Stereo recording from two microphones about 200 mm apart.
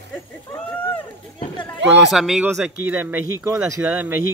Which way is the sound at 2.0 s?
5° right (ahead or behind).